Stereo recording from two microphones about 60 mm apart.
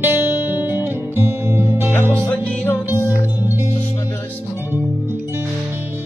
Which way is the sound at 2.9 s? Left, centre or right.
Right.